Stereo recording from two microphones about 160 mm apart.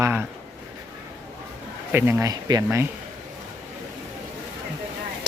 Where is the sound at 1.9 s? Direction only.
15° right (ahead or behind).